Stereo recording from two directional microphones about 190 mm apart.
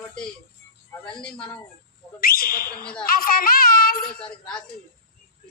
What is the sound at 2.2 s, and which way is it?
Speech, 50° left (ahead or behind).